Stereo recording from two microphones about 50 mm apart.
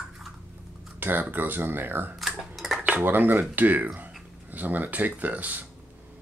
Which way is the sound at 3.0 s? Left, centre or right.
Right.